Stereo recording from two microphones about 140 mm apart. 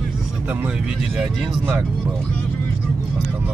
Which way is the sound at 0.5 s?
10° right (ahead or behind).